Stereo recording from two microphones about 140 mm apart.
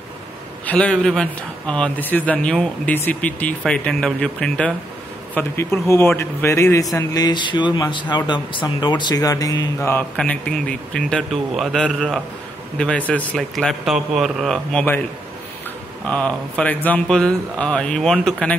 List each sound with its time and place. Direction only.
0.7 s speech: 5° left (ahead or behind)
10.1 s a man's voice: 5° left (ahead or behind)
16.1 s speech: 10° left (ahead or behind)